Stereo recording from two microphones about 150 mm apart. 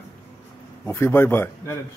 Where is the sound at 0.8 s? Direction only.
15° left (ahead or behind).